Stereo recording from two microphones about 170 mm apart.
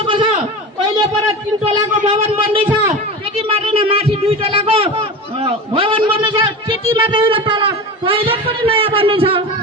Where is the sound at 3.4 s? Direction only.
30° right (ahead or behind).